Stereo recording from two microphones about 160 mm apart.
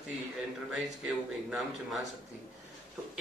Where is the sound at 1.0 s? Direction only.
5° right (ahead or behind).